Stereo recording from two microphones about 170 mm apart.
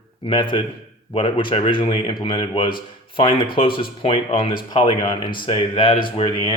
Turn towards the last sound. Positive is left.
turn(degrees=30)  # may be behind; listen again after turning